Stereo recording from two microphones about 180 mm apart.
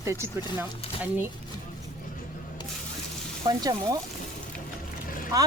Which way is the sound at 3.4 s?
20° right (ahead or behind).